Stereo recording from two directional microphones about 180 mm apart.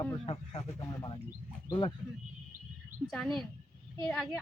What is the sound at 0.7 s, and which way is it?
A man's voice, 20° left (ahead or behind).